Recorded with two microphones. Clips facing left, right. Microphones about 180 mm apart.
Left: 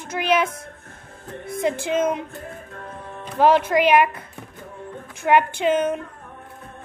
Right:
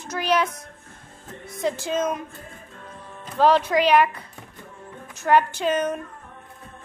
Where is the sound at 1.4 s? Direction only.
55° left (ahead or behind).